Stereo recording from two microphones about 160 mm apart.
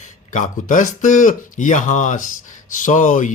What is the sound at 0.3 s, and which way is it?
Speech, 55° left (ahead or behind).